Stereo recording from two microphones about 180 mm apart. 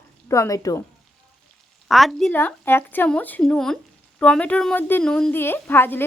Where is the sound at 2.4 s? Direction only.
10° left (ahead or behind).